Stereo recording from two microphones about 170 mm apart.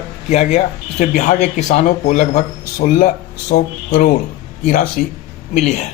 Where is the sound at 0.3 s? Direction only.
40° left (ahead or behind).